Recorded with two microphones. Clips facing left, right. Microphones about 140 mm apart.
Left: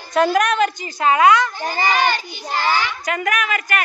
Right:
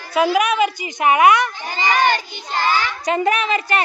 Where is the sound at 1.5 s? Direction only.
45° left (ahead or behind).